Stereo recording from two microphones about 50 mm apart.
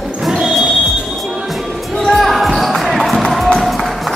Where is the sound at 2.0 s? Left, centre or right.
Centre.